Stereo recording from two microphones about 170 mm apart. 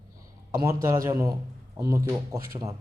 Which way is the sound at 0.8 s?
20° right (ahead or behind).